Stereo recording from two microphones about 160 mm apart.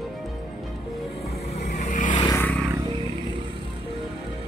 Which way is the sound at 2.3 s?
10° left (ahead or behind).